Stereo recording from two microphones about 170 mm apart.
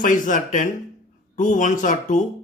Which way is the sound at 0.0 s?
50° left (ahead or behind).